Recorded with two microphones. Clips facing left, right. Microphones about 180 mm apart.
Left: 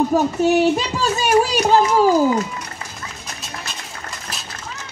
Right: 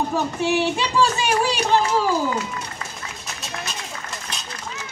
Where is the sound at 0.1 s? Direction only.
40° left (ahead or behind).